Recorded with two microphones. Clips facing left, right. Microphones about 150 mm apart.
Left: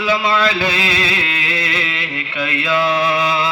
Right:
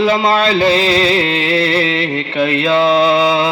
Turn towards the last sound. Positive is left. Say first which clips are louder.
# right 6 dB
turn(degrees=-25)  # may be behind; listen again after turning